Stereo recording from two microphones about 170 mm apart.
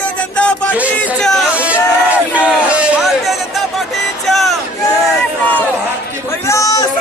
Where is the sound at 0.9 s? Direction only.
5° left (ahead or behind).